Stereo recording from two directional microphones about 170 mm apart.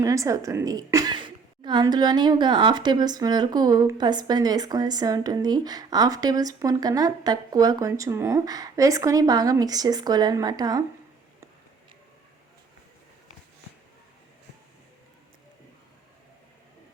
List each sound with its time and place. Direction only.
0.0 s a woman's voice: 20° right (ahead or behind)